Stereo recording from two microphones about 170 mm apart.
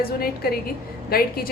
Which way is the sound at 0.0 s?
60° left (ahead or behind).